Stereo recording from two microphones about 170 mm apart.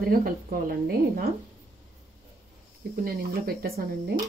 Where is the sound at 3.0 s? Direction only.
60° right (ahead or behind).